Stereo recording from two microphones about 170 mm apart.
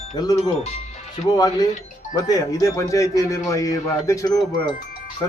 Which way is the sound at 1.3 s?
25° left (ahead or behind).